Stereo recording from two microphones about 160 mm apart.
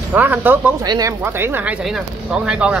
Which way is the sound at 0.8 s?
20° right (ahead or behind).